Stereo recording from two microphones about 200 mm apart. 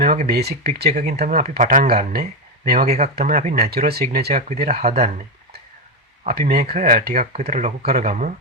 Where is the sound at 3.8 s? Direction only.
50° right (ahead or behind).